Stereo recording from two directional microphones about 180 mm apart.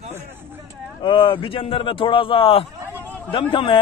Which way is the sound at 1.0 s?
30° left (ahead or behind).